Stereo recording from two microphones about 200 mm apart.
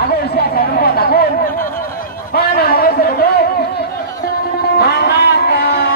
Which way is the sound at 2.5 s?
50° left (ahead or behind).